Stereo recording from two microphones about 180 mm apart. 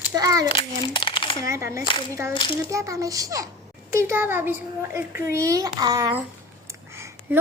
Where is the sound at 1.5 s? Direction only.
15° right (ahead or behind).